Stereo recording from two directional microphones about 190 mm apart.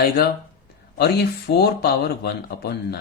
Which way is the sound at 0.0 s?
55° left (ahead or behind).